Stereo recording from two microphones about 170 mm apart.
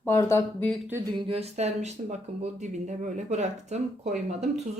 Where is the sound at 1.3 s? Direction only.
35° right (ahead or behind).